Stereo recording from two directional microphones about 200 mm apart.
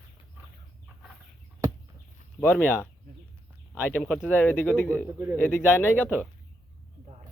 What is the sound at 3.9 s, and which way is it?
Speech, 5° left (ahead or behind).